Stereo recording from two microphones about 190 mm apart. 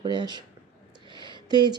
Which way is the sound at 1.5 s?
20° right (ahead or behind).